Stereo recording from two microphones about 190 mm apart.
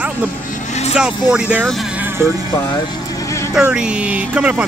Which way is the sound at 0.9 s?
5° right (ahead or behind).